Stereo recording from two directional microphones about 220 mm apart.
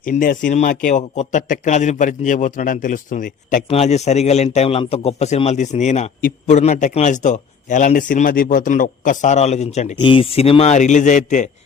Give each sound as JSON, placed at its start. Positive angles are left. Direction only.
{"t": 0.0, "sound": "a man's voice", "side_deg": 35}